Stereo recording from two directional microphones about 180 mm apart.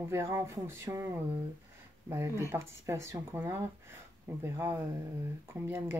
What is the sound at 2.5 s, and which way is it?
Speech, 15° right (ahead or behind).